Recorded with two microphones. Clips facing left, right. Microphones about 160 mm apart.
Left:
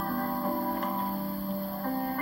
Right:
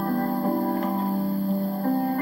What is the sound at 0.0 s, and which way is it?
Music, 40° right (ahead or behind).